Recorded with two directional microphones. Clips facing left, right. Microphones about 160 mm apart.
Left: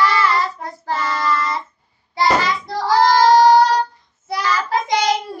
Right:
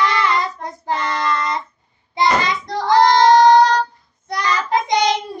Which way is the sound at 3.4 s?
5° left (ahead or behind).